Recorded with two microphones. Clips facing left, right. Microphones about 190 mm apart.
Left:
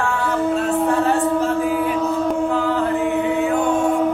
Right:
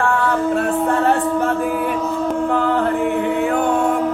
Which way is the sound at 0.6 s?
60° right (ahead or behind).